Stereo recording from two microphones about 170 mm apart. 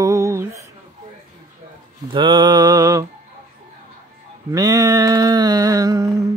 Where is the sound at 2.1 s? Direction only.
25° right (ahead or behind).